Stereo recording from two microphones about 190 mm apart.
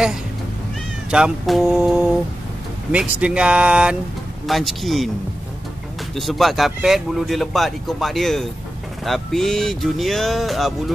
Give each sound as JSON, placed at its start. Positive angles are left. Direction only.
{"t": 1.1, "sound": "speech", "side_deg": 0}
{"t": 6.1, "sound": "speech", "side_deg": 0}